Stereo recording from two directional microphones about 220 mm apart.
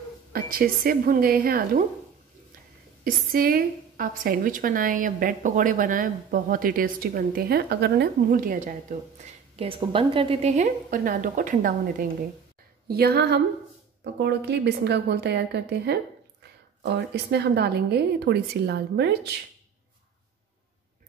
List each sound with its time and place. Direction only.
0.3 s a woman's voice: 40° right (ahead or behind)
3.0 s a woman's voice: 40° right (ahead or behind)
9.6 s a woman's voice: 25° right (ahead or behind); by 19.3 s 50° right (ahead or behind)